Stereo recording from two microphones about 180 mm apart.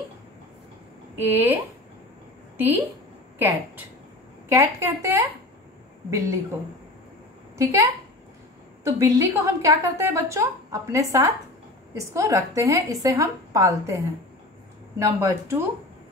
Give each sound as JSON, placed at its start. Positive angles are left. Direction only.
{"t": 1.1, "sound": "a woman's voice", "side_deg": -10}
{"t": 7.5, "sound": "a woman's voice", "side_deg": -20}